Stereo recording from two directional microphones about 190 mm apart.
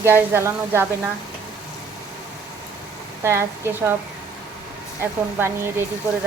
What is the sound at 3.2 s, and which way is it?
Speech, 15° right (ahead or behind).